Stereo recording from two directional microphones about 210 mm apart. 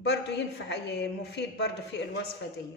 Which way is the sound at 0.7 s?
55° left (ahead or behind).